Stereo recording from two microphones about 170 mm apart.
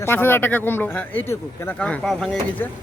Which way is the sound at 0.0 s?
15° left (ahead or behind).